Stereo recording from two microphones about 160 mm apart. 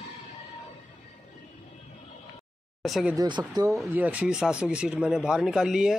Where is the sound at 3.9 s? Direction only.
10° right (ahead or behind).